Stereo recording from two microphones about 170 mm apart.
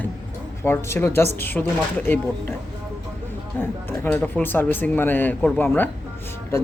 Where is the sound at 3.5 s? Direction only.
10° left (ahead or behind).